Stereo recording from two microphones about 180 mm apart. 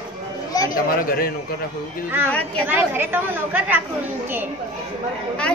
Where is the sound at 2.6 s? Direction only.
10° right (ahead or behind).